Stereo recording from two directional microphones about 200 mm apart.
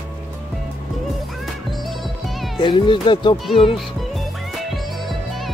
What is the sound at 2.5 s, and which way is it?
Speech, 25° left (ahead or behind).